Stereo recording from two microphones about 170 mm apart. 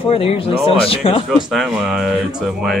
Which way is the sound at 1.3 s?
Centre (ahead or behind).